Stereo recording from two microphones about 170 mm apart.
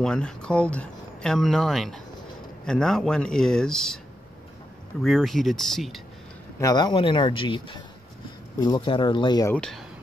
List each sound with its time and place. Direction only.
0.0 s speech: 5° left (ahead or behind)
5.0 s speech: centre (ahead or behind)
6.6 s speech: 25° left (ahead or behind)
9.5 s speech: 5° left (ahead or behind)